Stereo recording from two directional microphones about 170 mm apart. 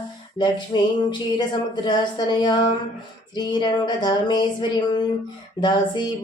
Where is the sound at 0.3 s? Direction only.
25° left (ahead or behind).